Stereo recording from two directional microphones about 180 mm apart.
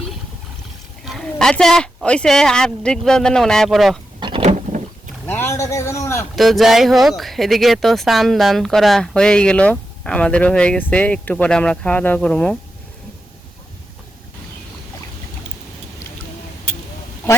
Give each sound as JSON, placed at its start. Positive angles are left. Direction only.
{"t": 1.0, "sound": "speech", "side_deg": 0}
{"t": 4.2, "sound": "a sound", "side_deg": -30}
{"t": 5.2, "sound": "a man's voice", "side_deg": 10}
{"t": 6.3, "sound": "speech", "side_deg": 0}